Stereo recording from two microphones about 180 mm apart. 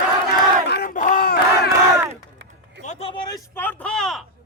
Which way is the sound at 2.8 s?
35° left (ahead or behind).